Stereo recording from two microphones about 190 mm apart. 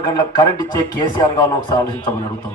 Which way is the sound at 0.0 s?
25° left (ahead or behind).